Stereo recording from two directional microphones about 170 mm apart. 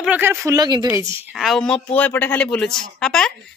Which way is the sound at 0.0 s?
10° right (ahead or behind).